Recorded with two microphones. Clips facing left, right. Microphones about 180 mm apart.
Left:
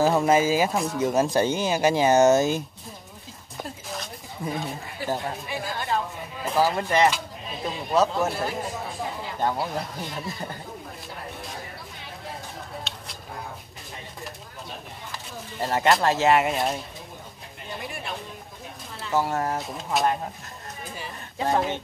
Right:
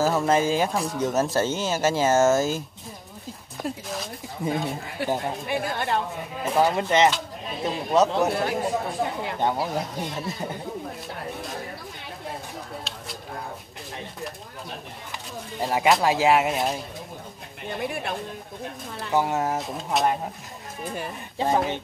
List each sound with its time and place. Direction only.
0.2 s speech: 5° left (ahead or behind)
3.5 s speech: centre (ahead or behind)
5.5 s speech: 60° right (ahead or behind)
6.4 s speech: centre (ahead or behind)
6.8 s speech: 20° right (ahead or behind)
7.6 s speech: centre (ahead or behind)
9.0 s speech: 65° right (ahead or behind)
9.6 s speech: centre (ahead or behind)
12.9 s a sound: centre (ahead or behind)
15.5 s speech: centre (ahead or behind)
19.1 s speech: 20° right (ahead or behind)
19.5 s speech: centre (ahead or behind)
20.8 s speech: 55° right (ahead or behind)
21.4 s speech: centre (ahead or behind)